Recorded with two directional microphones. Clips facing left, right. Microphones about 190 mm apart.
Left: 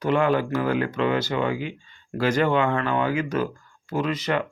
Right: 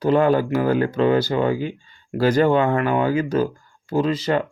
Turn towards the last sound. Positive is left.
turn(degrees=-30)  # may be behind; listen again after turning